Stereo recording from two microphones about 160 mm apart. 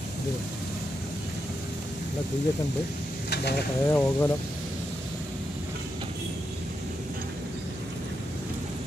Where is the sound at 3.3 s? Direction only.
90° left.